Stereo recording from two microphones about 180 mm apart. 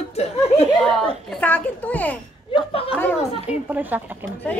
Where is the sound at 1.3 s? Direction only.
10° left (ahead or behind).